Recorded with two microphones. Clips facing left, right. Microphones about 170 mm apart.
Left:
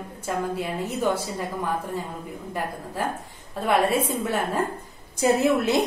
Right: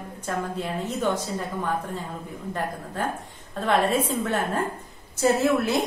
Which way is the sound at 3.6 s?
10° left (ahead or behind).